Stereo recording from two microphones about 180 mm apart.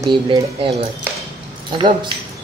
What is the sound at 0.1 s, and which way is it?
Speech, 30° right (ahead or behind).